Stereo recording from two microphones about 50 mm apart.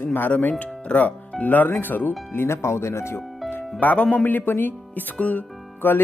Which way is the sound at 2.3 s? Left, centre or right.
Left.